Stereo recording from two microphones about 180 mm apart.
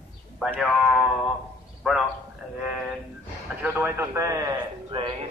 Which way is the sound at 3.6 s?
10° right (ahead or behind).